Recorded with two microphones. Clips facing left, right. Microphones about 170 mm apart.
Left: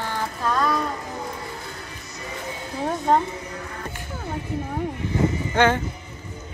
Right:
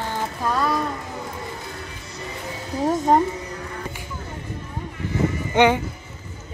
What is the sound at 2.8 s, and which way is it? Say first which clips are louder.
Speech: right 3 dB; 10° right (ahead or behind).